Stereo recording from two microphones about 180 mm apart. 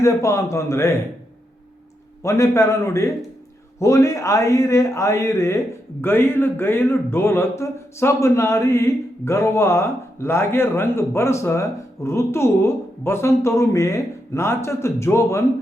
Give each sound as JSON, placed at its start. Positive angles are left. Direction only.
{"t": 0.0, "sound": "a man's voice", "side_deg": 15}
{"t": 2.2, "sound": "a man's voice", "side_deg": 15}